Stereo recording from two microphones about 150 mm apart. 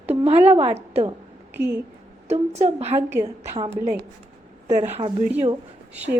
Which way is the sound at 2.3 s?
45° right (ahead or behind).